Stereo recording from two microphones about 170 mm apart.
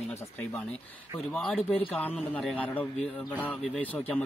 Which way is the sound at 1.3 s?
Centre (ahead or behind).